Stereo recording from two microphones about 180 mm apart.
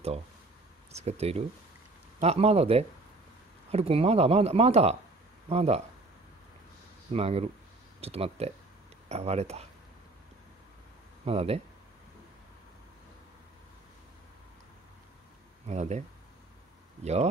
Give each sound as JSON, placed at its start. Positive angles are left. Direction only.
{"t": 0.9, "sound": "speech", "side_deg": -35}
{"t": 7.1, "sound": "speech", "side_deg": -35}
{"t": 11.2, "sound": "speech", "side_deg": -35}
{"t": 15.6, "sound": "speech", "side_deg": -40}
{"t": 17.0, "sound": "speech", "side_deg": -40}